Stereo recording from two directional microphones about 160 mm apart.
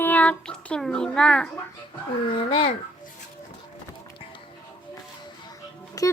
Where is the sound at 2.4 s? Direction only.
35° left (ahead or behind).